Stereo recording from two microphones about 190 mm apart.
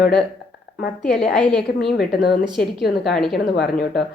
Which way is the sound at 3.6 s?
60° left (ahead or behind).